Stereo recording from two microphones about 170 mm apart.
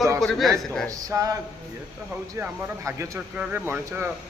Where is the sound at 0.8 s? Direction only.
20° right (ahead or behind).